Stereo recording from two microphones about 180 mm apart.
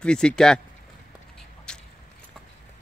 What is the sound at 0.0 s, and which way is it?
Speech, 5° left (ahead or behind).